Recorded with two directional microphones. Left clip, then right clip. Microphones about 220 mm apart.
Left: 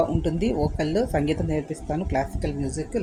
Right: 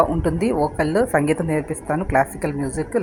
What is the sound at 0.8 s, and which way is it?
Speech, 5° right (ahead or behind).